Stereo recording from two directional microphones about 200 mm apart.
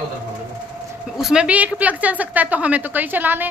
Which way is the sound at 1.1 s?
5° right (ahead or behind).